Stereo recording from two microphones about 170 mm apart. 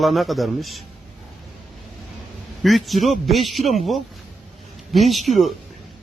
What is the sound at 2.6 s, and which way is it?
A man's voice, centre (ahead or behind).